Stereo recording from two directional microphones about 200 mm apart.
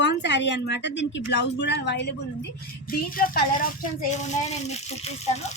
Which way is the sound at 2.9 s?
45° left (ahead or behind).